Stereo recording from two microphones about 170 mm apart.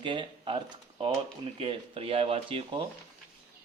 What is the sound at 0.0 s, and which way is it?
Speech, 30° right (ahead or behind).